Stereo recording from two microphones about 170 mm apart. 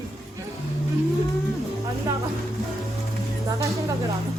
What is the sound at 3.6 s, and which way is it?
Speech, 20° right (ahead or behind).